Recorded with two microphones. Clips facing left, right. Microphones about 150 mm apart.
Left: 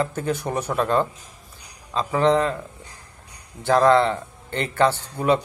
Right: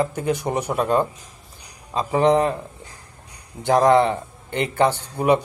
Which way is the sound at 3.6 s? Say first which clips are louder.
Right 1 dB; 15° right (ahead or behind).